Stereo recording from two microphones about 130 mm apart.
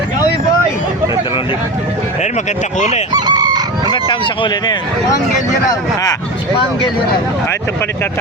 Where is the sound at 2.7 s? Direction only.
65° left (ahead or behind).